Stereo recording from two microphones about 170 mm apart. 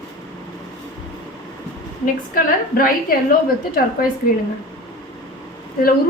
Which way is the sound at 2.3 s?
60° left (ahead or behind).